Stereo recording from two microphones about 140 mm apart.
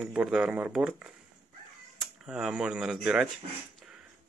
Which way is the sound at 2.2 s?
5° right (ahead or behind).